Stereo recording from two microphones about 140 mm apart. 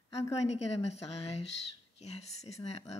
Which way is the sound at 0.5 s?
50° left (ahead or behind).